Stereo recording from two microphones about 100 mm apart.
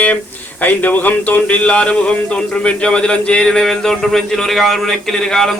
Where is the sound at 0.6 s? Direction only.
15° left (ahead or behind).